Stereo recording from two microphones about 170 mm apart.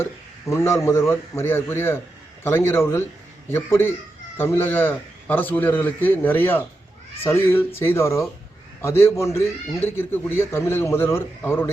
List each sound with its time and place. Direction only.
0.0 s a man's voice: 15° left (ahead or behind)